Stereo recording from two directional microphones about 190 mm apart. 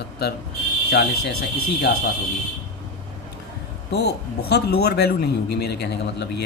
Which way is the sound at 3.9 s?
60° left (ahead or behind).